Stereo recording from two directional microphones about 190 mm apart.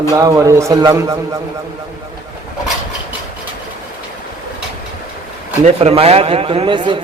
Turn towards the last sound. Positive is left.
turn(degrees=-25)  # may be behind; listen again after turning